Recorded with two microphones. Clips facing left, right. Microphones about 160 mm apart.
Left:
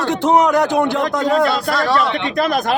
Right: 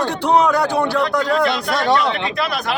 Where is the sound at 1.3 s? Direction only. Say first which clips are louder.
Left 2 dB; 40° left (ahead or behind).